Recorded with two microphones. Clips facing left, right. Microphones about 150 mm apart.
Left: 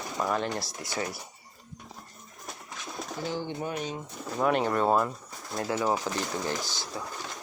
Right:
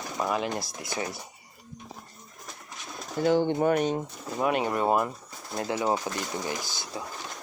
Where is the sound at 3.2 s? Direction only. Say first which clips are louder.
Right 11 dB; 60° right (ahead or behind).